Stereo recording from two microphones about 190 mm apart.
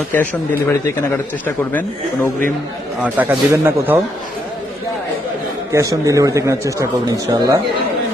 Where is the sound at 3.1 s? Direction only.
10° right (ahead or behind).